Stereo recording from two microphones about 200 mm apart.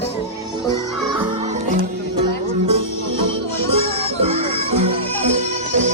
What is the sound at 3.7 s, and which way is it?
Music, 30° right (ahead or behind).